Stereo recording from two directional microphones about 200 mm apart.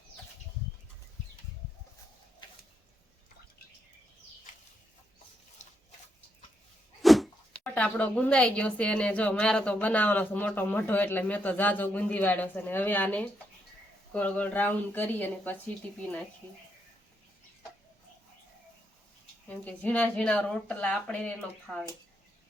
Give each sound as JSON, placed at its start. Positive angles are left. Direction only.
{"t": 5.6, "sound": "a sound", "side_deg": 35}
{"t": 7.0, "sound": "speech", "side_deg": 0}
{"t": 19.5, "sound": "speech", "side_deg": 10}